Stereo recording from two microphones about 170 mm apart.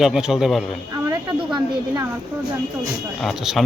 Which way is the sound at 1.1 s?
20° right (ahead or behind).